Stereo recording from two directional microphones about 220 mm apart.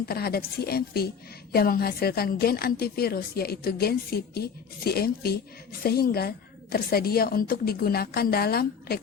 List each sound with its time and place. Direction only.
0.0 s a woman's voice: 45° left (ahead or behind)